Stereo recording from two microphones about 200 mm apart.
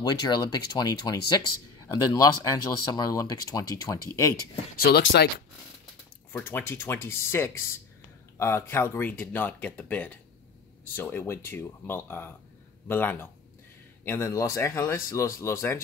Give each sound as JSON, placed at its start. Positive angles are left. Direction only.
{"t": 0.0, "sound": "speech", "side_deg": 20}
{"t": 4.9, "sound": "speech", "side_deg": 55}
{"t": 6.3, "sound": "speech", "side_deg": 10}